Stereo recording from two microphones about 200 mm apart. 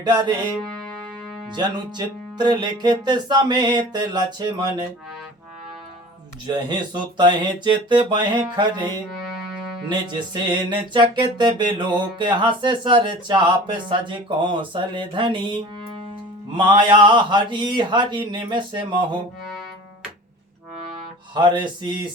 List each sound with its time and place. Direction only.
0.0 s music: 20° right (ahead or behind)
1.5 s music: 20° right (ahead or behind)
6.5 s music: 20° right (ahead or behind)
21.3 s music: 25° right (ahead or behind)